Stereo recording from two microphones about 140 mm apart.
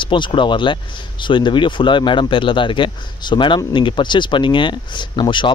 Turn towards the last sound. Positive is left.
turn(degrees=35)  # may be behind; listen again after turning